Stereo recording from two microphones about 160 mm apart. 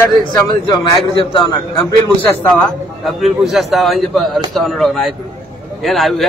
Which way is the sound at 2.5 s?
5° left (ahead or behind).